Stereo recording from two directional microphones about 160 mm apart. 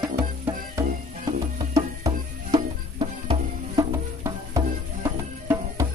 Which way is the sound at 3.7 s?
20° right (ahead or behind).